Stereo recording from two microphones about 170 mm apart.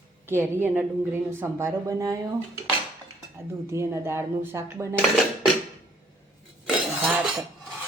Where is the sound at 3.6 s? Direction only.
15° right (ahead or behind).